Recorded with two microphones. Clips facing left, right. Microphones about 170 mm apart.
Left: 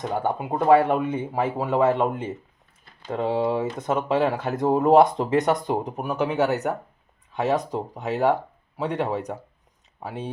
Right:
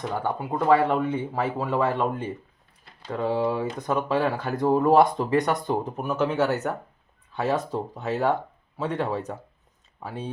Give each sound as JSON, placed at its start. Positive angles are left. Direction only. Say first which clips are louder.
{"t": 0.1, "sound": "speech", "louder": "left 3 dB", "side_deg": 20}